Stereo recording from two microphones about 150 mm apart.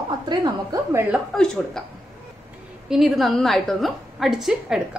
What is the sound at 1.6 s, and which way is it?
Speech, 5° left (ahead or behind).